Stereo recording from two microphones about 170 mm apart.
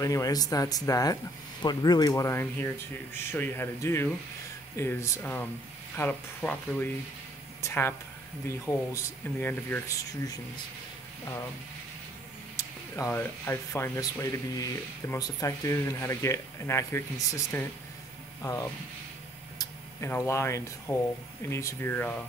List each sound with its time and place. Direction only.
0.0 s speech: 20° left (ahead or behind)
12.5 s speech: 15° left (ahead or behind)